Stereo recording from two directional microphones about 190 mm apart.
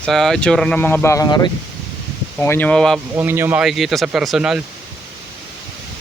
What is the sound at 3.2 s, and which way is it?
A man's voice, 10° right (ahead or behind).